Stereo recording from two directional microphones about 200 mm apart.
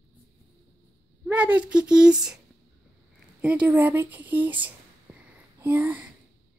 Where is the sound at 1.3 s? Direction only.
5° right (ahead or behind).